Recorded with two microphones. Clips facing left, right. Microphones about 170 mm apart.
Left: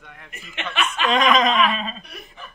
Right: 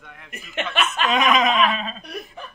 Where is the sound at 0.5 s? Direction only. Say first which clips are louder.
Right 2 dB; 45° right (ahead or behind).